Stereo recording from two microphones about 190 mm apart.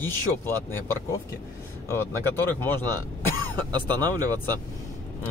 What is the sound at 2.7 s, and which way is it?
Speech, 20° right (ahead or behind).